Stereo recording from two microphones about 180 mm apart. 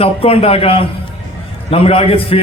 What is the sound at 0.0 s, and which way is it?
A man's voice, 30° left (ahead or behind).